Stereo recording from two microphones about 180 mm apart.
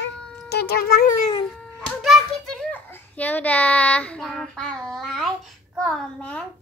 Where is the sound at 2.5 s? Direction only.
5° left (ahead or behind).